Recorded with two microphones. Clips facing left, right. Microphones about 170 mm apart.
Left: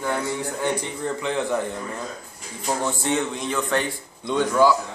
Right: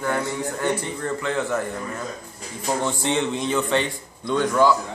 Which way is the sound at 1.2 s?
15° left (ahead or behind).